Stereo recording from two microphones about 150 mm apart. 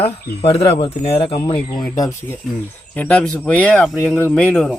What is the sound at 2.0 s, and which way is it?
Speech, 20° left (ahead or behind).